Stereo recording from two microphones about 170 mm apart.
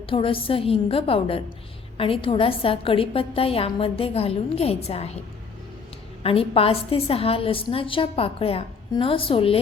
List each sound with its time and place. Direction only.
0.0 s a woman's voice: 30° left (ahead or behind)
6.2 s a woman's voice: 35° left (ahead or behind)